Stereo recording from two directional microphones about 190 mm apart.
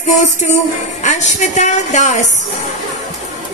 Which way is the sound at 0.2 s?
40° left (ahead or behind).